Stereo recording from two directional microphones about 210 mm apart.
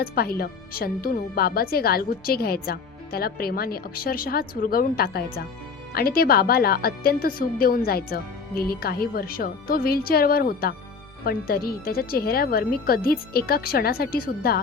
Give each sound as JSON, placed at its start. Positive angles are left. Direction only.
{"t": 0.0, "sound": "speech", "side_deg": 45}